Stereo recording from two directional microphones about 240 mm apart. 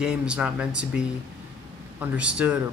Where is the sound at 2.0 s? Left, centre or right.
Centre.